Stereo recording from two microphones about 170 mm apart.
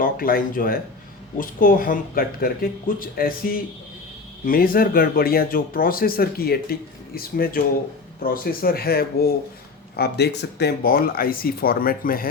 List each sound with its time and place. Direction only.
0.0 s a man's voice: 60° left (ahead or behind)